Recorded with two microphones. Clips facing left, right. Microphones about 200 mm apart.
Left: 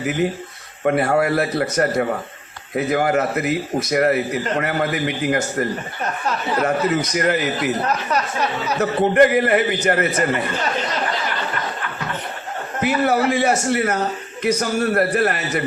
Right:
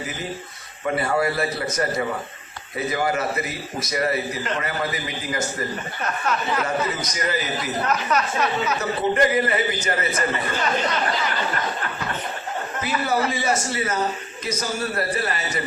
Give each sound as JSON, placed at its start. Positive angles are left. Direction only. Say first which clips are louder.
{"t": 0.0, "sound": "speech", "louder": "left 11 dB", "side_deg": 70}
{"t": 0.9, "sound": "a man's voice", "louder": "left 5 dB", "side_deg": 60}
{"t": 6.7, "sound": "a man's voice", "louder": "left 6 dB", "side_deg": 65}
{"t": 7.9, "sound": "speech", "louder": "left 1 dB", "side_deg": 35}
{"t": 8.8, "sound": "a man's voice", "louder": "left 8 dB", "side_deg": 60}
{"t": 12.8, "sound": "a man's voice", "louder": "left 6 dB", "side_deg": 65}